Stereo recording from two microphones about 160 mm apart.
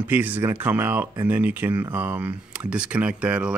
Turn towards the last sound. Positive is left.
turn(degrees=-5)  # may be behind; listen again after turning